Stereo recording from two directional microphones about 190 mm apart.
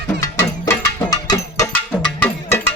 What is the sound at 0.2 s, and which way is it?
Music, 20° left (ahead or behind).